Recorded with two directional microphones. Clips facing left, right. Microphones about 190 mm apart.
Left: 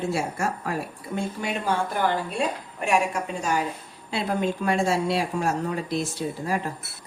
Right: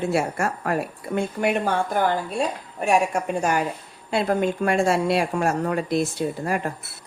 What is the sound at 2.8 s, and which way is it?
A woman's voice, 50° right (ahead or behind).